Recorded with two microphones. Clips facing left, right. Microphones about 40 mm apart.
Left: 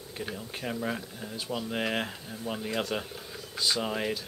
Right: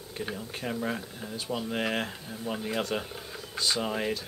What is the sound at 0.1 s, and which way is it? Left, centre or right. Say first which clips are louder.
Speech: right 2 dB; centre.